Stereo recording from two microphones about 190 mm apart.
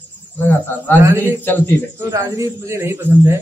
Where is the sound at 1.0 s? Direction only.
10° right (ahead or behind).